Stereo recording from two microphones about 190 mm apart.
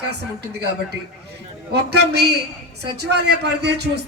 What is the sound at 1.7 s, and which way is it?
Speech, 60° right (ahead or behind).